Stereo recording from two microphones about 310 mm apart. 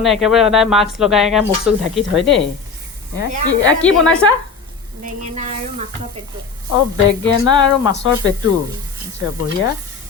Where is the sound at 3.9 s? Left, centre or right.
Left.